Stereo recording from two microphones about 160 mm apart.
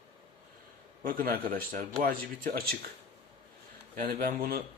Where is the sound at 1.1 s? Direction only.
65° right (ahead or behind).